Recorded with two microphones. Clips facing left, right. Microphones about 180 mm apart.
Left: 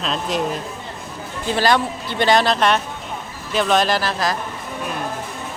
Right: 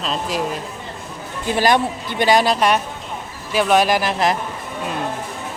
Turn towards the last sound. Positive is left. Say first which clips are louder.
# right 3 dB
turn(degrees=-20)  # may be behind; listen again after turning